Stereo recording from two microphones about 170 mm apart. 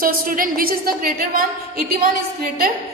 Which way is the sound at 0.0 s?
55° right (ahead or behind).